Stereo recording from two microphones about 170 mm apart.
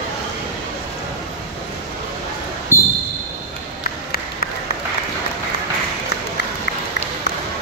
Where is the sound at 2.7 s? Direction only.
15° left (ahead or behind).